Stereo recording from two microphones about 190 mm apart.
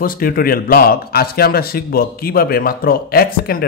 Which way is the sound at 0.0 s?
50° left (ahead or behind).